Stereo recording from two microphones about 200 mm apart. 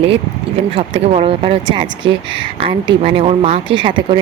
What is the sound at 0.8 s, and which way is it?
Speech, 30° right (ahead or behind).